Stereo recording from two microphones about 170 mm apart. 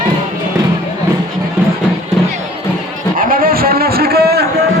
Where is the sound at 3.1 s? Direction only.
55° right (ahead or behind).